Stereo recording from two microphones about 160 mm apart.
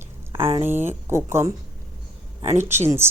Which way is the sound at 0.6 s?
15° right (ahead or behind).